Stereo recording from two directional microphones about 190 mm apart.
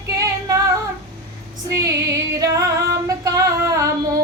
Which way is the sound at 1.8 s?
15° right (ahead or behind).